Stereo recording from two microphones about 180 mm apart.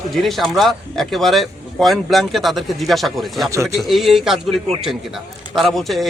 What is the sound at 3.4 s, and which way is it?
Speech, 15° right (ahead or behind).